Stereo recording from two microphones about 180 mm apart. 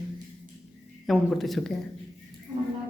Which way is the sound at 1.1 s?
Centre (ahead or behind).